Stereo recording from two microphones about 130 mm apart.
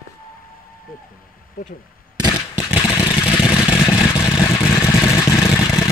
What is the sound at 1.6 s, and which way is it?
Speech, 90° left.